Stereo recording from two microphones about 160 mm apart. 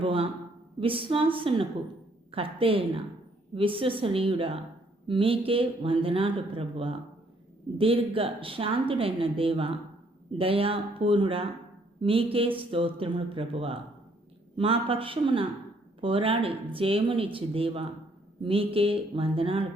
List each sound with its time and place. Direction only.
0.0 s a man's voice: 35° right (ahead or behind)